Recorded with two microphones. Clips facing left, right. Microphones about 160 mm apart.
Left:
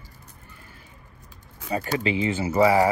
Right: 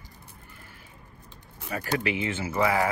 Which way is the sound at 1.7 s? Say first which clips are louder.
Left 3 dB; 20° left (ahead or behind).